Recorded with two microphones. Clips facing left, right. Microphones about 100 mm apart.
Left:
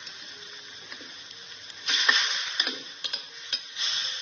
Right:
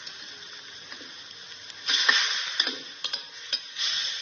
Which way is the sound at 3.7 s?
35° left (ahead or behind).